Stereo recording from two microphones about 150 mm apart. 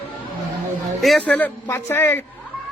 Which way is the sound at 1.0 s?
Centre (ahead or behind).